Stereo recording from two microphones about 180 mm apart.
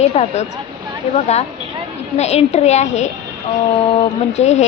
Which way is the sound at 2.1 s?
35° left (ahead or behind).